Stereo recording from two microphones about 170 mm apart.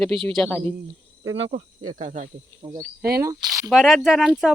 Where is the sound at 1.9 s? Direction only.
45° right (ahead or behind).